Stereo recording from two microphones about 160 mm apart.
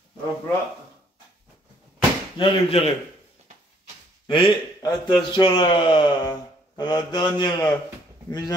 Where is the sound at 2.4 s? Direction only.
35° left (ahead or behind).